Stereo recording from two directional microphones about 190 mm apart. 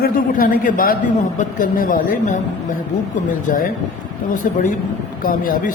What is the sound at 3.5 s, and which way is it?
A man's voice, 45° left (ahead or behind).